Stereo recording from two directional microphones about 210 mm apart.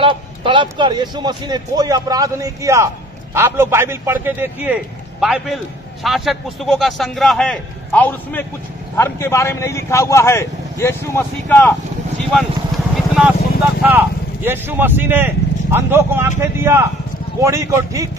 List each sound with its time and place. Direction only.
0.0 s a man's voice: 25° right (ahead or behind); by 11.7 s 10° left (ahead or behind)
12.3 s vehicle: centre (ahead or behind)
13.8 s a man's voice: 10° right (ahead or behind)